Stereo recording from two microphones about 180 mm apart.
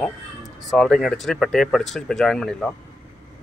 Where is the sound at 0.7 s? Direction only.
5° left (ahead or behind).